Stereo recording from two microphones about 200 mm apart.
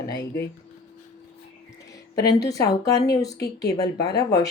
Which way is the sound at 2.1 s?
15° left (ahead or behind).